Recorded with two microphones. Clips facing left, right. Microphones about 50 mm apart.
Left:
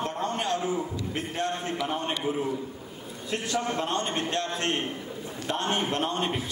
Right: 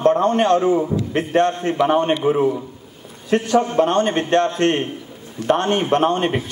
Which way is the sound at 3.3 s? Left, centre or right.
Right.